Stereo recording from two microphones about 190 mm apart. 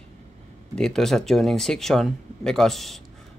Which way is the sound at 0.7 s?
5° left (ahead or behind).